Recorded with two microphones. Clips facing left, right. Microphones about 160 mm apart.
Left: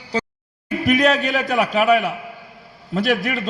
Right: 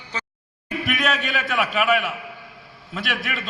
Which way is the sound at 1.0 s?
40° left (ahead or behind).